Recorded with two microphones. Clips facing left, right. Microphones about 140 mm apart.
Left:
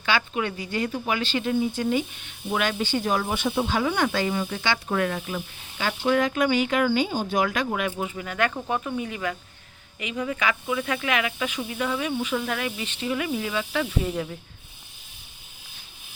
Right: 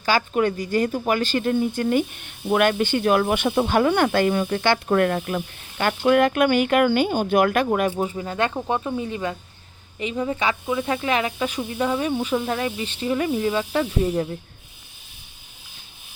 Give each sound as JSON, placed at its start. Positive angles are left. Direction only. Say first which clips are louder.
{"t": 0.0, "sound": "speech", "louder": "right 5 dB", "side_deg": -40}
{"t": 7.7, "sound": "speech", "louder": "right 6 dB", "side_deg": -40}